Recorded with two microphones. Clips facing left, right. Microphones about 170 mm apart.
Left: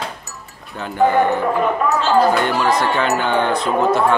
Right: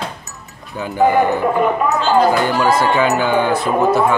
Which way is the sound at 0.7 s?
10° right (ahead or behind).